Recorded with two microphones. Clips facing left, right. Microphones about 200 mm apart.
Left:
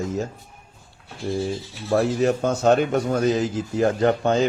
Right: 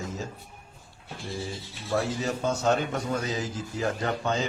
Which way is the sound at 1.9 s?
60° left (ahead or behind).